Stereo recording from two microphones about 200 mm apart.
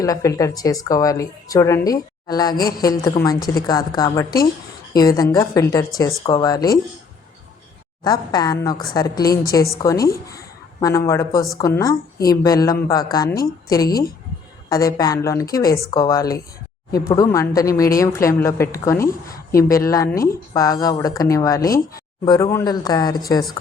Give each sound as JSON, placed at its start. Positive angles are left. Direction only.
{"t": 0.0, "sound": "a woman's voice", "side_deg": 15}
{"t": 8.0, "sound": "a woman's voice", "side_deg": 20}